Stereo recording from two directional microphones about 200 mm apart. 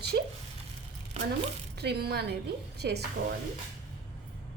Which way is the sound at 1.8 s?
55° right (ahead or behind).